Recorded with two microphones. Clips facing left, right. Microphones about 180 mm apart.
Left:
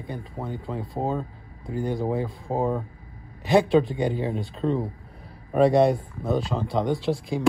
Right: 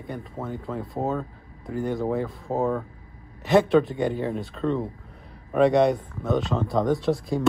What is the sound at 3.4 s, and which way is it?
Speech, centre (ahead or behind).